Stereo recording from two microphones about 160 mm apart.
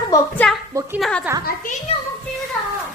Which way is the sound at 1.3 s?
10° right (ahead or behind).